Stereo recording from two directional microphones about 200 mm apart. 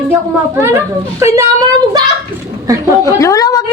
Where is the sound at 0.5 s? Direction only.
15° right (ahead or behind).